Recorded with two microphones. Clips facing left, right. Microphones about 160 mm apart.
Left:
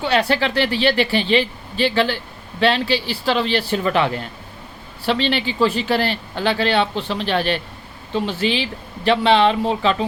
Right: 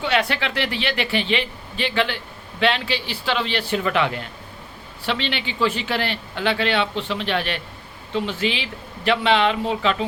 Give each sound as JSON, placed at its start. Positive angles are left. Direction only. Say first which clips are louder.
{"t": 0.0, "sound": "speech", "louder": "left 4 dB", "side_deg": 35}